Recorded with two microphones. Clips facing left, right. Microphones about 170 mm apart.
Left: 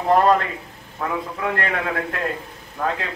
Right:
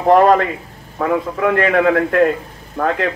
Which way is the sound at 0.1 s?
60° right (ahead or behind).